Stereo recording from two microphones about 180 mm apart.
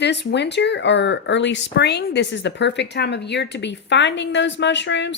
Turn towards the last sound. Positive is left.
turn(degrees=80)